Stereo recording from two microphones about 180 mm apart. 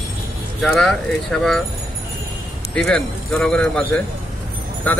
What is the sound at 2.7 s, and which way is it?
Speech, 5° left (ahead or behind).